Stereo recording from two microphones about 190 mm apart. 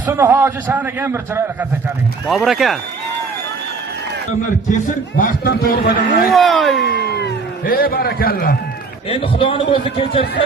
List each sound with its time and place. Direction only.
0.1 s a man's voice: 10° right (ahead or behind)
2.2 s speech: centre (ahead or behind)
4.7 s a man's voice: 45° left (ahead or behind)
6.3 s speech: centre (ahead or behind)
6.8 s cat: 60° left (ahead or behind)
9.0 s a man's voice: 30° left (ahead or behind)